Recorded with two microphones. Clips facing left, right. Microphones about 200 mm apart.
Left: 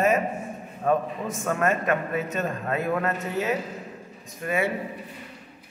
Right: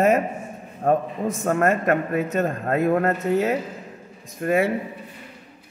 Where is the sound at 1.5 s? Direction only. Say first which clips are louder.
Right 4 dB; 50° right (ahead or behind).